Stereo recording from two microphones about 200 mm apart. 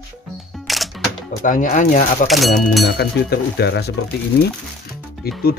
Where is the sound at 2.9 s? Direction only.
55° left (ahead or behind).